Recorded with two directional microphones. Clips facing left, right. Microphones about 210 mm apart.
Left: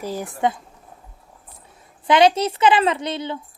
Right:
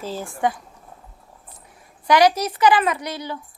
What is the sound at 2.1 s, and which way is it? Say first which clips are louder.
A woman's voice: left 1 dB; 25° left (ahead or behind).